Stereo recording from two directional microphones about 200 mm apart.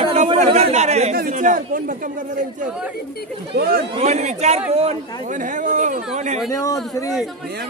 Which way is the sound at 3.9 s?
35° right (ahead or behind).